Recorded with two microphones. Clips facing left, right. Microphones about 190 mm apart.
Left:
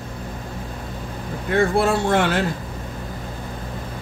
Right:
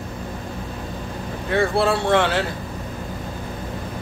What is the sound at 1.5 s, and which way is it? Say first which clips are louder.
Speech: left 1 dB; 50° left (ahead or behind).